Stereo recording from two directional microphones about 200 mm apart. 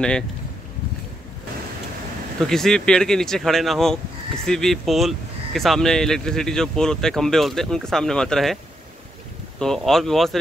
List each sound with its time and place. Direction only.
2.4 s speech: centre (ahead or behind)
9.6 s speech: centre (ahead or behind)